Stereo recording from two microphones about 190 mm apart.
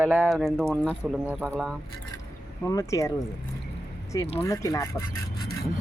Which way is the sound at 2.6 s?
15° left (ahead or behind).